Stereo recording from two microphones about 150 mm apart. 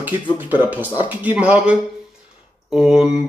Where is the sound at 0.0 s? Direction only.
15° right (ahead or behind).